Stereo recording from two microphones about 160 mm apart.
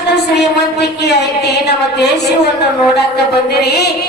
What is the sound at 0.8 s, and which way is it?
A woman's voice, 90° left.